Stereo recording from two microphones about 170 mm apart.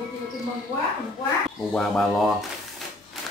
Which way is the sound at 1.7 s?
Centre (ahead or behind).